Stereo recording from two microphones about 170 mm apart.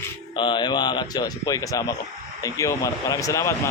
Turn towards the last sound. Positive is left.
turn(degrees=20)  # may be behind; listen again after turning